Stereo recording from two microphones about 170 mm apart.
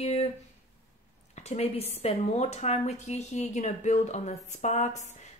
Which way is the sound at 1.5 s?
35° left (ahead or behind).